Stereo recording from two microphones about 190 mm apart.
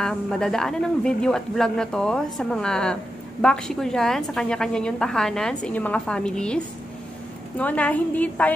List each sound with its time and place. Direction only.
0.0 s a woman's voice: 5° left (ahead or behind)